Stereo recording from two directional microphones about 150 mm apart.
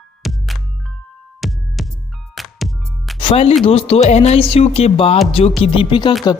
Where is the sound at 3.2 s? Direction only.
40° left (ahead or behind).